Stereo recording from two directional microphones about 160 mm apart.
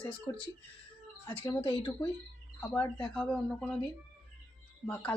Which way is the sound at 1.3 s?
10° left (ahead or behind).